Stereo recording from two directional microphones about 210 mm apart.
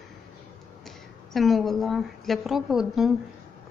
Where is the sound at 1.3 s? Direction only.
Centre (ahead or behind).